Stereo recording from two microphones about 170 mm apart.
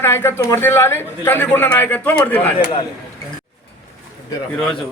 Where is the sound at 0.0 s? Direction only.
15° left (ahead or behind).